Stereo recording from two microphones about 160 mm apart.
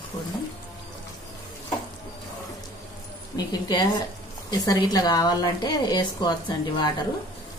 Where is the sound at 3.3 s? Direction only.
25° left (ahead or behind).